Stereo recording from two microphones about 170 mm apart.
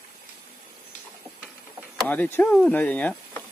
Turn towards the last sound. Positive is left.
turn(degrees=10)  # may be behind; listen again after turning